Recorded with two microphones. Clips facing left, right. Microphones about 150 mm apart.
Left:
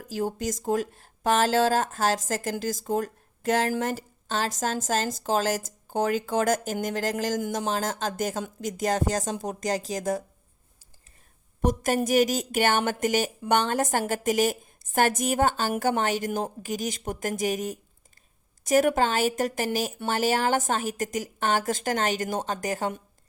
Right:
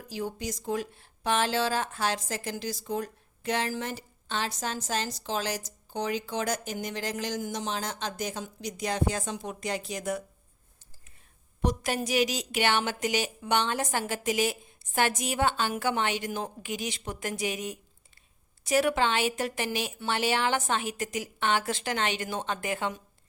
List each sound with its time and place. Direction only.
0.0 s speech: 45° left (ahead or behind)
11.6 s speech: 45° left (ahead or behind)